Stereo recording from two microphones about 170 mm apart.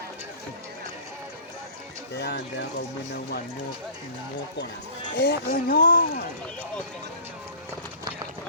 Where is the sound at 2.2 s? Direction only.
75° left (ahead or behind).